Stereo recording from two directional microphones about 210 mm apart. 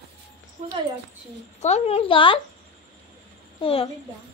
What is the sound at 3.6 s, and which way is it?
Speech, 25° left (ahead or behind).